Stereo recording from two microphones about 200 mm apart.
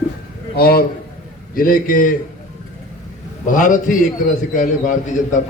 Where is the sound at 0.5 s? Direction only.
50° left (ahead or behind).